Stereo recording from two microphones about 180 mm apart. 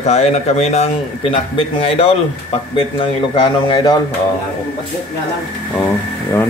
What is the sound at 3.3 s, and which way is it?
Speech, 30° left (ahead or behind).